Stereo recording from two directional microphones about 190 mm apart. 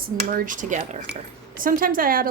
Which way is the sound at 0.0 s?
50° right (ahead or behind).